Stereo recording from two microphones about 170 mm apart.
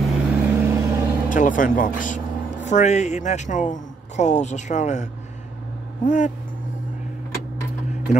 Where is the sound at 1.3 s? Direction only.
50° left (ahead or behind).